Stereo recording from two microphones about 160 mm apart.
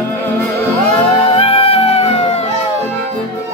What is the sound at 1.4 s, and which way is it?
Music, 40° left (ahead or behind).